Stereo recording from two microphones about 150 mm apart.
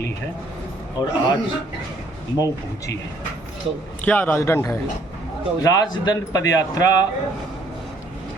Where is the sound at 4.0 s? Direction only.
10° left (ahead or behind).